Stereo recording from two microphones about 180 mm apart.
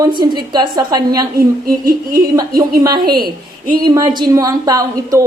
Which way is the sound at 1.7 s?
55° right (ahead or behind).